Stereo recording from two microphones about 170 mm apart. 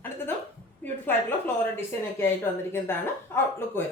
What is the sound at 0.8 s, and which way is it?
A woman's voice, 10° left (ahead or behind).